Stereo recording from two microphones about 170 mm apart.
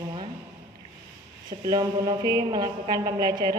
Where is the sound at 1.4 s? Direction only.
25° right (ahead or behind).